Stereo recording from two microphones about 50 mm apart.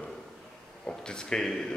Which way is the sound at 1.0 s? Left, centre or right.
Centre.